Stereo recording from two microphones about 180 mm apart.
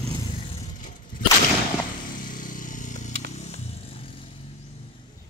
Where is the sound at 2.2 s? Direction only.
50° left (ahead or behind).